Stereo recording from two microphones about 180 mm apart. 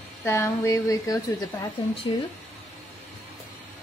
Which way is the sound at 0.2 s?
15° left (ahead or behind).